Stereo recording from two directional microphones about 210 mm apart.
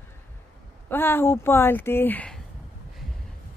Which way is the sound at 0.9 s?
10° left (ahead or behind).